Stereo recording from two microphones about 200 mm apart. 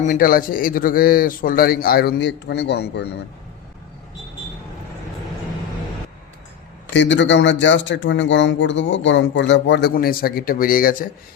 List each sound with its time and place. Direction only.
0.0 s a man's voice: 45° left (ahead or behind)
6.9 s speech: 65° left (ahead or behind)
9.9 s a man's voice: 45° left (ahead or behind)